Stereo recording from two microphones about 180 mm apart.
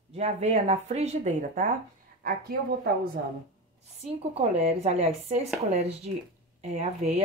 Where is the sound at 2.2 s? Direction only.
55° right (ahead or behind).